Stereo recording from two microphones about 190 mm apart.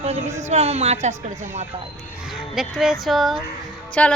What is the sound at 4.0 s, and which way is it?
Music, 5° left (ahead or behind).